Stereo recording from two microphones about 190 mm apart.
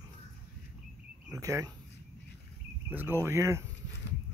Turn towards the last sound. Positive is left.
turn(degrees=-15)  # may be behind; listen again after turning